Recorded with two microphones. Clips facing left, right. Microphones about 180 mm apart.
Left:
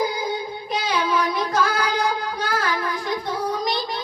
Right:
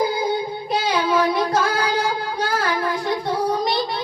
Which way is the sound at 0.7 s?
30° right (ahead or behind).